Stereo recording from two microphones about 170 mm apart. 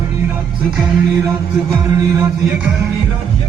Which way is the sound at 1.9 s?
20° right (ahead or behind).